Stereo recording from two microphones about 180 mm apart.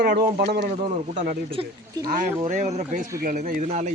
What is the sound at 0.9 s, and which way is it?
Speech, 45° right (ahead or behind).